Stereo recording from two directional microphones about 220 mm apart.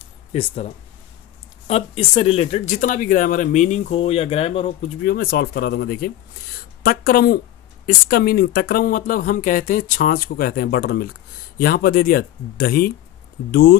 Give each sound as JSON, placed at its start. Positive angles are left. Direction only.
{"t": 0.3, "sound": "speech", "side_deg": 30}
{"t": 5.0, "sound": "speech", "side_deg": 45}